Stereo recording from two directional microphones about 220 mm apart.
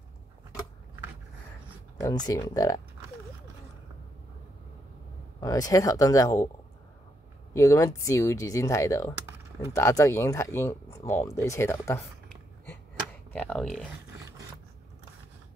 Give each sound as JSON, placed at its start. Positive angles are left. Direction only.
{"t": 2.0, "sound": "speech", "side_deg": 15}
{"t": 5.4, "sound": "speech", "side_deg": 15}
{"t": 7.5, "sound": "speech", "side_deg": 15}
{"t": 13.3, "sound": "speech", "side_deg": 5}